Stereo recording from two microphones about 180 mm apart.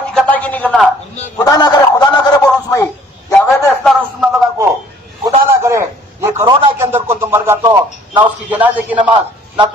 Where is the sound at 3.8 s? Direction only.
Centre (ahead or behind).